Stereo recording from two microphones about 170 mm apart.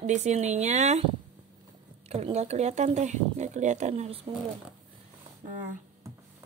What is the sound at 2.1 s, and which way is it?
Speech, 40° right (ahead or behind).